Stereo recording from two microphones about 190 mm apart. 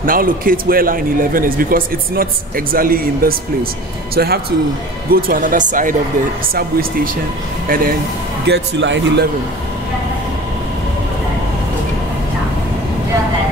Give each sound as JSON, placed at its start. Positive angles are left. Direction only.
{"t": 0.0, "sound": "a man's voice", "side_deg": -50}
{"t": 7.6, "sound": "speech", "side_deg": -50}
{"t": 8.5, "sound": "speech", "side_deg": -70}